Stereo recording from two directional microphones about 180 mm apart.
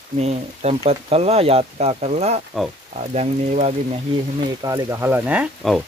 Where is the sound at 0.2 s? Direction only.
35° right (ahead or behind).